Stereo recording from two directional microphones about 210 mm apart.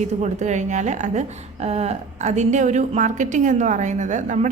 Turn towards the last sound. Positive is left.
turn(degrees=-35)  # may be behind; listen again after turning